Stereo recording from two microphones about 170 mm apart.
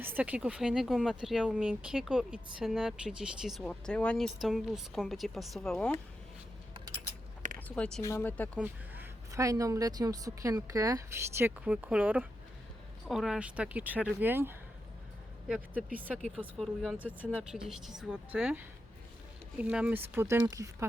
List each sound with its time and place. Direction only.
0.0 s speech: 10° right (ahead or behind)
7.4 s a sound: 50° right (ahead or behind)
7.8 s speech: 5° left (ahead or behind)
8.0 s speech: 15° left (ahead or behind)
8.5 s speech: 10° right (ahead or behind)
9.3 s a woman's voice: 20° right (ahead or behind)